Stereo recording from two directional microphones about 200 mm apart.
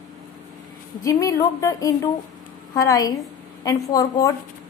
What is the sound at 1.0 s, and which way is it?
Speech, 15° left (ahead or behind).